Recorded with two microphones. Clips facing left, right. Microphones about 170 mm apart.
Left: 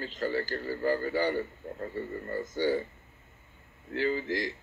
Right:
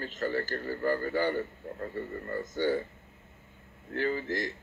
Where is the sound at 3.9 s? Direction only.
45° right (ahead or behind).